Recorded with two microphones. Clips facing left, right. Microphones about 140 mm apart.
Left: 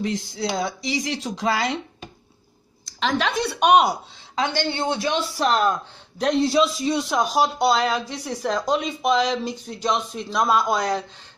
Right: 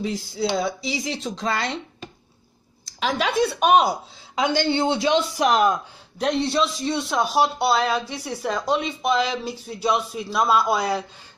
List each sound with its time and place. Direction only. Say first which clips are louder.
0.0 s speech: even; 5° right (ahead or behind)
4.4 s speech: right 3 dB; 20° right (ahead or behind)
5.5 s speech: right 2 dB; 10° right (ahead or behind)